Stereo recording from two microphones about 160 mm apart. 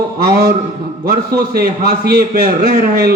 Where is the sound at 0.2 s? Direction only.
75° right (ahead or behind).